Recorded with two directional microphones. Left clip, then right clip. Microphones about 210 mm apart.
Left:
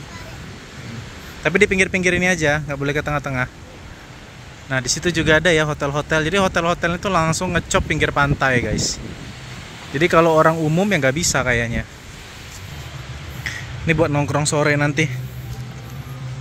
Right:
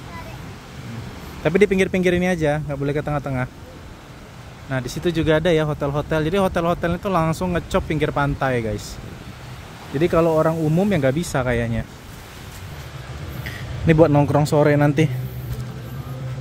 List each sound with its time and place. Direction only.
1.4 s speech: 5° right (ahead or behind)
4.6 s speech: centre (ahead or behind)
9.9 s speech: 5° left (ahead or behind)
10.8 s speech: centre (ahead or behind)
13.4 s a man's voice: 15° right (ahead or behind)